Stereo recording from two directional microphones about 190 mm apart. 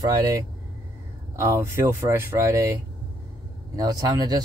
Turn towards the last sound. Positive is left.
turn(degrees=-20)  # may be behind; listen again after turning